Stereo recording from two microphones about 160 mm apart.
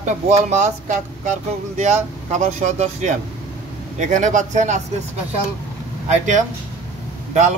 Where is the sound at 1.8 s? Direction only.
50° right (ahead or behind).